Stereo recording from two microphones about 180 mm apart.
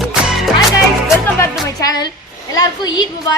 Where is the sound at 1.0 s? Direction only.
15° left (ahead or behind).